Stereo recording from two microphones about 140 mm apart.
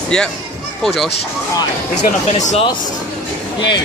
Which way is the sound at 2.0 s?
60° left (ahead or behind).